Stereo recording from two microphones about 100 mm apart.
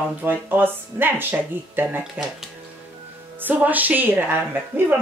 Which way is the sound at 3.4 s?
15° right (ahead or behind).